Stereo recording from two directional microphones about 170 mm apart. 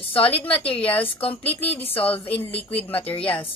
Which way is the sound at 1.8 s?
35° left (ahead or behind).